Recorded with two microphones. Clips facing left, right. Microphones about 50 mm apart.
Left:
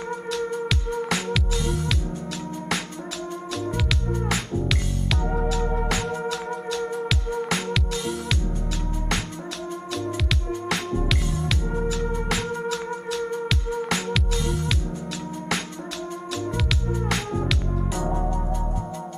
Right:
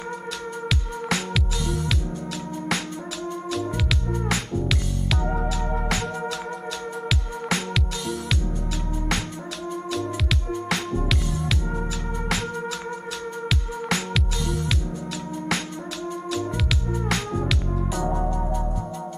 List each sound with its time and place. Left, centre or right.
0.7 s music: centre
3.5 s music: centre
11.3 s music: centre
16.3 s music: centre